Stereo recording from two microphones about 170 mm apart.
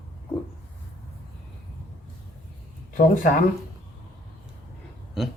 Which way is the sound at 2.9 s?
50° left (ahead or behind).